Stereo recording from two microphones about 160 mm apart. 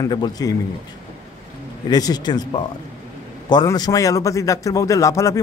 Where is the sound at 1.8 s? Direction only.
25° left (ahead or behind).